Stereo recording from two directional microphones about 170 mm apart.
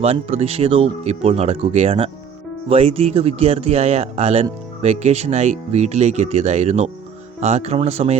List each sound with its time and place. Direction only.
0.0 s speech: 35° right (ahead or behind)